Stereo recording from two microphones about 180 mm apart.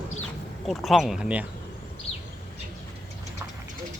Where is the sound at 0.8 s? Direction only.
Centre (ahead or behind).